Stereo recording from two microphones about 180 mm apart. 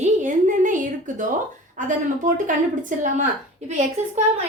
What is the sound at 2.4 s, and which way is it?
Speech, 45° right (ahead or behind).